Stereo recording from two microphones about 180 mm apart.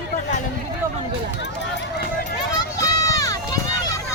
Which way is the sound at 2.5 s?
20° left (ahead or behind).